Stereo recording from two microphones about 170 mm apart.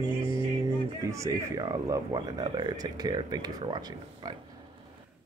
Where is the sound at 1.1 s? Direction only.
20° right (ahead or behind).